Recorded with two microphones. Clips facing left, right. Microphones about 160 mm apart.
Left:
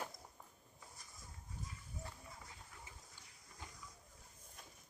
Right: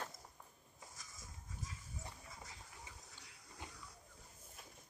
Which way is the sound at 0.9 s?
90° right.